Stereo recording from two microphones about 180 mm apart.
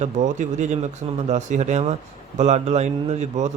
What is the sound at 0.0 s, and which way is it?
Speech, 40° right (ahead or behind).